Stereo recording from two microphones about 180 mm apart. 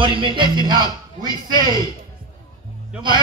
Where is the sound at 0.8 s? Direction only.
20° left (ahead or behind).